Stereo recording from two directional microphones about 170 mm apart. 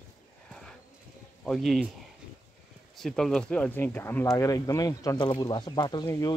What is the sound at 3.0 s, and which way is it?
Speech, 5° left (ahead or behind).